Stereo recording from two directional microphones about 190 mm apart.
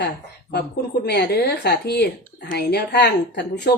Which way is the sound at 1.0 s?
60° left (ahead or behind).